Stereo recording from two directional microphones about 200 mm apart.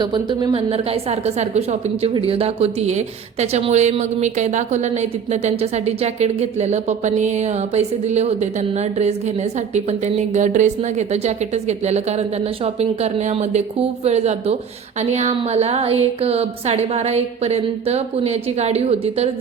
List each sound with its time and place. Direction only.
0.0 s a woman's voice: 20° right (ahead or behind)